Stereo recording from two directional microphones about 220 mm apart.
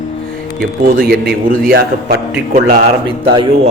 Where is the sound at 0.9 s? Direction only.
45° right (ahead or behind).